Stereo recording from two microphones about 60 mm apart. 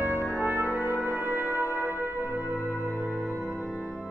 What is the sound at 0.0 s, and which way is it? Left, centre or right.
Brass instrument, right.